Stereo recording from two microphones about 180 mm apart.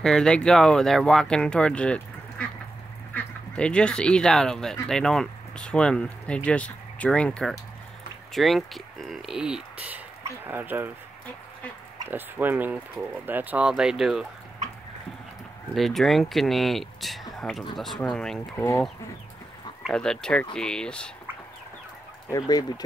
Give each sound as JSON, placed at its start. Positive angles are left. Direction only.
{"t": 0.0, "sound": "speech", "side_deg": 5}
{"t": 12.1, "sound": "speech", "side_deg": -10}
{"t": 15.7, "sound": "speech", "side_deg": 0}
{"t": 19.9, "sound": "speech", "side_deg": 5}
{"t": 22.3, "sound": "speech", "side_deg": 20}